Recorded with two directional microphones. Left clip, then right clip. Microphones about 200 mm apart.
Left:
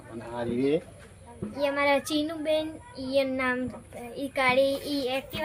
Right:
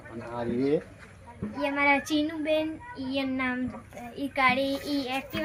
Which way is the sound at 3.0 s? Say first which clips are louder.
Left 4 dB; 45° left (ahead or behind).